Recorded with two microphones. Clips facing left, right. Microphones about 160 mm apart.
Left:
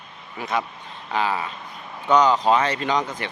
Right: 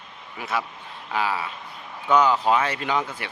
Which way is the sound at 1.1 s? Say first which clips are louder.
Left 2 dB; 10° right (ahead or behind).